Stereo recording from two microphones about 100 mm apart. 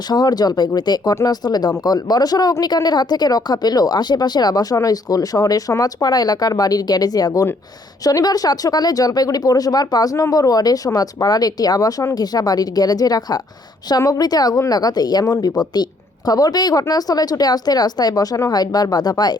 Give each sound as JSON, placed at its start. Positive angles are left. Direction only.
{"t": 0.1, "sound": "speech", "side_deg": 45}